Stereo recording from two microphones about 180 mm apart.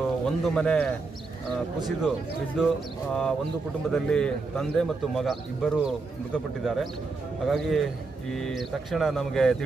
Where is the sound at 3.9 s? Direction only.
5° left (ahead or behind).